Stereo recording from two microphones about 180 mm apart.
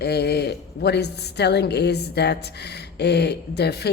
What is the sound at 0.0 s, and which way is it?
Speech, 65° left (ahead or behind).